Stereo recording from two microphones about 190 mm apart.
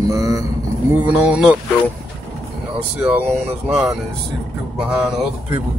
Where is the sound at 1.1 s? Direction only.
5° right (ahead or behind).